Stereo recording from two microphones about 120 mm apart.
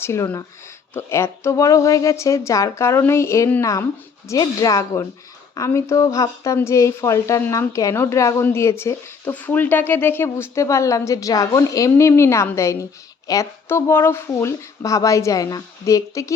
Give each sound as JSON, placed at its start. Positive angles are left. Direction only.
{"t": 0.0, "sound": "speech", "side_deg": 20}